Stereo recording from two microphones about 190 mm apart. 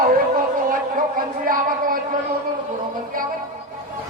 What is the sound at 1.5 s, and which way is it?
Speech, 50° right (ahead or behind).